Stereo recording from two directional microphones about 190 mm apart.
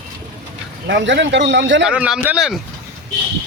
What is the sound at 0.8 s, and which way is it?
A man's voice, 65° right (ahead or behind).